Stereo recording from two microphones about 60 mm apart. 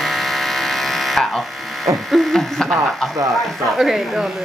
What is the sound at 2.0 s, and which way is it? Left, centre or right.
Speech, centre.